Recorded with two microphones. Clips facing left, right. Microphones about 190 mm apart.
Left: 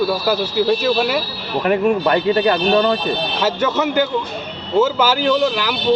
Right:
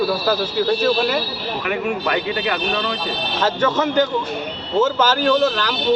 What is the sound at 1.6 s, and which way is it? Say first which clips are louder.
A man's voice: left 7 dB; 40° left (ahead or behind).